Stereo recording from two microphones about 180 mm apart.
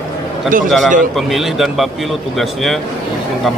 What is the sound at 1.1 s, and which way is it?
Speech, centre (ahead or behind).